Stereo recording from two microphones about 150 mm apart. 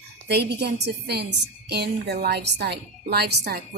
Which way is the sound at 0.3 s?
90° right.